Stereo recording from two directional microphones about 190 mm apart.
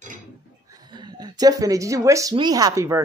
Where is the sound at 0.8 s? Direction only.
20° right (ahead or behind).